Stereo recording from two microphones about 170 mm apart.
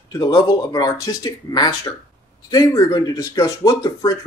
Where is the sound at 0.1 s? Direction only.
25° left (ahead or behind).